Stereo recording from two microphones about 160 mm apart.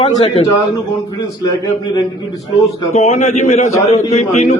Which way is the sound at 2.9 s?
40° left (ahead or behind).